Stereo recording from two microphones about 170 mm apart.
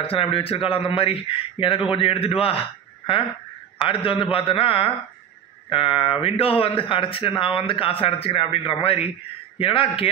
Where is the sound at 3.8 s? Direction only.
30° left (ahead or behind).